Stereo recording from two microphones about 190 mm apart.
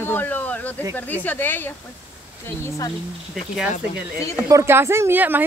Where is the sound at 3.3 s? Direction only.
Centre (ahead or behind).